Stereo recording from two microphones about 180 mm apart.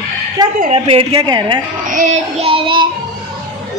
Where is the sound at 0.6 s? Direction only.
35° right (ahead or behind).